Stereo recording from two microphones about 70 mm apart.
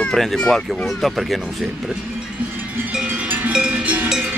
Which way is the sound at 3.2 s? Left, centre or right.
Right.